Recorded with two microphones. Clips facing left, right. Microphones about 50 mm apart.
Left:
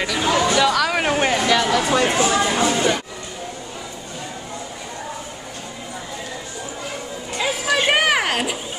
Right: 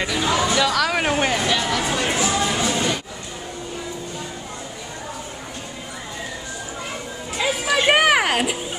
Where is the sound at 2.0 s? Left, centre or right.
Left.